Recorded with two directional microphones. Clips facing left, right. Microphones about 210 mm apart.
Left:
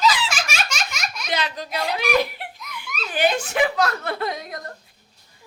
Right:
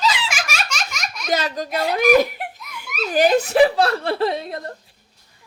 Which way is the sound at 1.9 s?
45° right (ahead or behind).